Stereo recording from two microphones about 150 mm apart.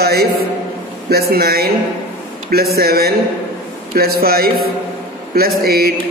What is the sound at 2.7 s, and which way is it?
A woman's voice, 90° right.